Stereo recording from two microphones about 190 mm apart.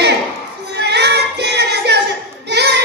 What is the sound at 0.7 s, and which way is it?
Female singing, 60° right (ahead or behind).